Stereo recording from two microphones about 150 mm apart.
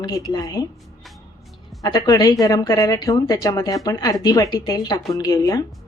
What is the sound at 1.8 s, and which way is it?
A woman's voice, 25° left (ahead or behind).